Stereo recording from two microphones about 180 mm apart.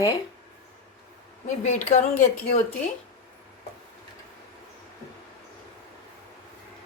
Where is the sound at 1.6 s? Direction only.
40° left (ahead or behind).